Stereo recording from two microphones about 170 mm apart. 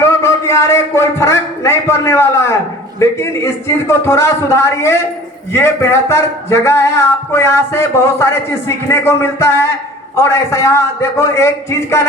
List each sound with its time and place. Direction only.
0.0 s a man's voice: 15° left (ahead or behind)